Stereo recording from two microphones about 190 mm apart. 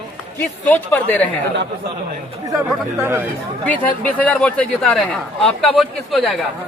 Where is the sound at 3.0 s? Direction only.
10° right (ahead or behind).